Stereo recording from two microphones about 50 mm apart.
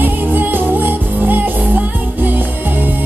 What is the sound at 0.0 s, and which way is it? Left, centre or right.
Music, right.